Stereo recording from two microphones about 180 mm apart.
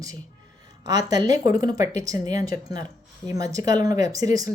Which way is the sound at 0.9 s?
20° right (ahead or behind).